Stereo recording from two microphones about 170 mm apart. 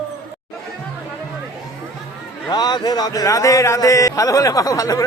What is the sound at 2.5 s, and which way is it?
Speech, 25° left (ahead or behind).